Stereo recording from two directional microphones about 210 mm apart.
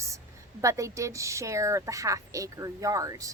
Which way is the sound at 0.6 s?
15° right (ahead or behind).